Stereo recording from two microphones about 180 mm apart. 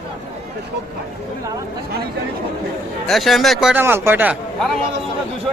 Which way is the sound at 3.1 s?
Centre (ahead or behind).